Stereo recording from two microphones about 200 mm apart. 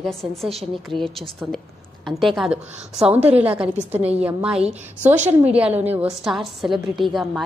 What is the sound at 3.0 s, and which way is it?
Speech, 30° right (ahead or behind).